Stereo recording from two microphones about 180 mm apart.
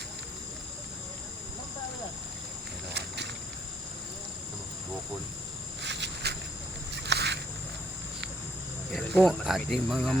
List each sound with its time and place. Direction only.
5.8 s insect: 75° right (ahead or behind)
6.9 s a sound: 70° right (ahead or behind)
8.9 s speech: centre (ahead or behind)